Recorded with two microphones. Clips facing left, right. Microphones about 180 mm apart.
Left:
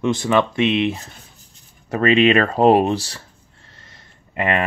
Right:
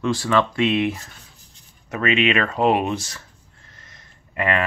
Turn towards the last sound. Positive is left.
turn(degrees=25)  # may be behind; listen again after turning